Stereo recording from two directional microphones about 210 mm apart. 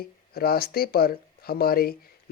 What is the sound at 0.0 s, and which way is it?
Speech, 45° left (ahead or behind).